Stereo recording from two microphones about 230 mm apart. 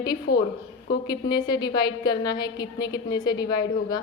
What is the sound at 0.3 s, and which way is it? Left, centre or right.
Speech, left.